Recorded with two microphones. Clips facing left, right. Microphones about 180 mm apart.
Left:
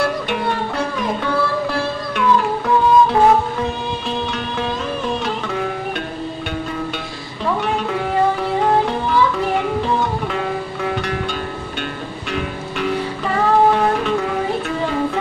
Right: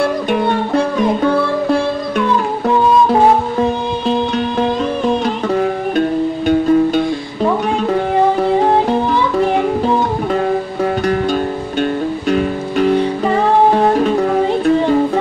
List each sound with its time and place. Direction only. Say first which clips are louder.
2.1 s music: left 2 dB; 40° right (ahead or behind)
5.2 s music: right 7 dB; 40° right (ahead or behind)
10.3 s music: right 7 dB; 40° right (ahead or behind)